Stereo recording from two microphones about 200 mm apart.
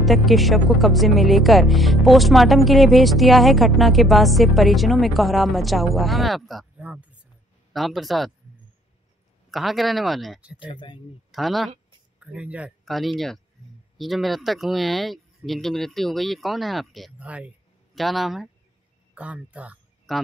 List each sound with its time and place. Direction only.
0.0 s speech: centre (ahead or behind)
9.5 s speech: centre (ahead or behind)
10.6 s speech: 25° left (ahead or behind)
11.3 s speech: centre (ahead or behind)